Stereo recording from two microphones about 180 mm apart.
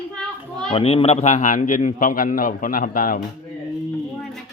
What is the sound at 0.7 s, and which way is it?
A man's voice, 35° left (ahead or behind).